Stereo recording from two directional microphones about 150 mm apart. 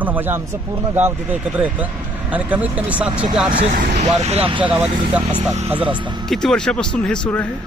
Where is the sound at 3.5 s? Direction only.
50° right (ahead or behind).